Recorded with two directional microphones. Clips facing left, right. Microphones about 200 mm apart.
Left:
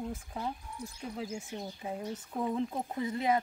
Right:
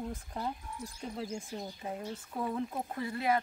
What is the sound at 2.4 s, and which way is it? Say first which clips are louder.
Speech: left 2 dB; 20° left (ahead or behind).